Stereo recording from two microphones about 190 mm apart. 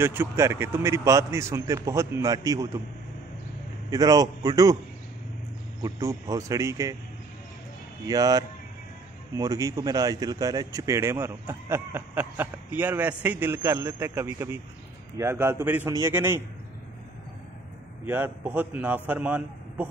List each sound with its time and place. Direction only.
0.0 s speech: 10° right (ahead or behind)
3.9 s a man's voice: 20° right (ahead or behind)
5.8 s speech: 15° right (ahead or behind)
8.0 s a man's voice: 20° right (ahead or behind)
18.0 s speech: 10° right (ahead or behind)